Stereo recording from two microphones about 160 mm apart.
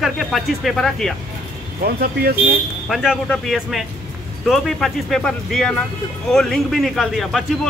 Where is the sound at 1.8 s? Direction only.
75° right (ahead or behind).